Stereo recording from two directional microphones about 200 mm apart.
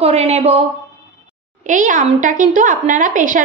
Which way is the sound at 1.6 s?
40° right (ahead or behind).